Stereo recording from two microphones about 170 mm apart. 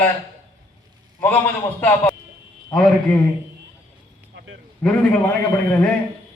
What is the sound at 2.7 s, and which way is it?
Speech, 5° left (ahead or behind).